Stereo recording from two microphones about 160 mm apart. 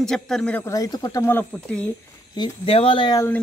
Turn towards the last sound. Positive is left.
turn(degrees=30)  # may be behind; listen again after turning